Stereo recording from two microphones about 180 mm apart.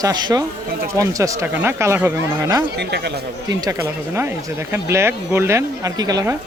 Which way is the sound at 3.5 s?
15° right (ahead or behind).